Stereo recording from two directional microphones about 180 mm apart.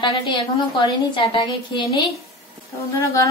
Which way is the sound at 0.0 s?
25° left (ahead or behind).